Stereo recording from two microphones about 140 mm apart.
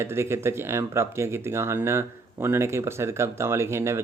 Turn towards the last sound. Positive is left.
turn(degrees=-20)  # may be behind; listen again after turning